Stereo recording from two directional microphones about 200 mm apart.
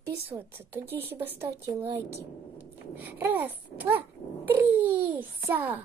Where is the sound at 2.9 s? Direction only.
10° right (ahead or behind).